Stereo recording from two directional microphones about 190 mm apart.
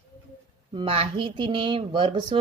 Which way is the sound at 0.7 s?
30° right (ahead or behind).